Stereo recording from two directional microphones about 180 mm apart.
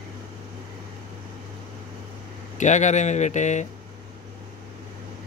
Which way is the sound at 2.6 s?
40° left (ahead or behind).